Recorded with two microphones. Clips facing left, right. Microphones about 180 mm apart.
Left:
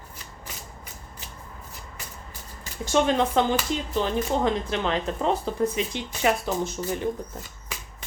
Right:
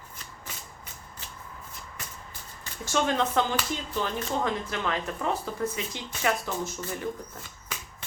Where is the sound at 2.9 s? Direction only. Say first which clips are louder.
Left 4 dB; 20° left (ahead or behind).